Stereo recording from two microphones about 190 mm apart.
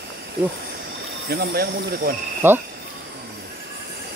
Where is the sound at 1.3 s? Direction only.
55° right (ahead or behind).